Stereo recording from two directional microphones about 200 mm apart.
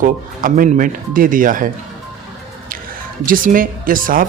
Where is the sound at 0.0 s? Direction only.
45° right (ahead or behind).